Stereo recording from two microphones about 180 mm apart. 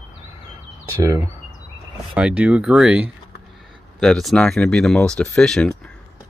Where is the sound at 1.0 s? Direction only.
20° right (ahead or behind).